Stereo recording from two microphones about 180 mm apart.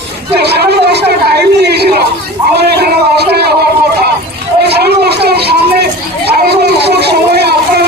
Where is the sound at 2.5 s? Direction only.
65° right (ahead or behind).